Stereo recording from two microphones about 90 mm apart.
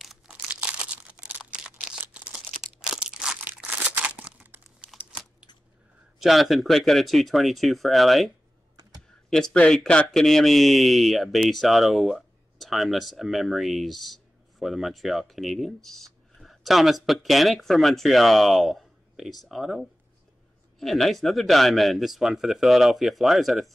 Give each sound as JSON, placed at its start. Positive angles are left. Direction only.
{"t": 0.3, "sound": "a sound", "side_deg": -15}
{"t": 3.4, "sound": "crumpling", "side_deg": -15}
{"t": 6.1, "sound": "speech", "side_deg": 0}
{"t": 9.3, "sound": "speech", "side_deg": 10}